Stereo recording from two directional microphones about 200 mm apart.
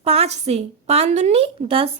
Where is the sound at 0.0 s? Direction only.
30° right (ahead or behind).